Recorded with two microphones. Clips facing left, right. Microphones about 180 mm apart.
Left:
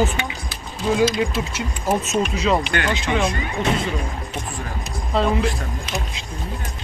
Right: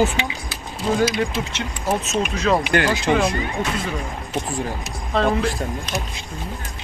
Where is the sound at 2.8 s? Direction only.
35° right (ahead or behind).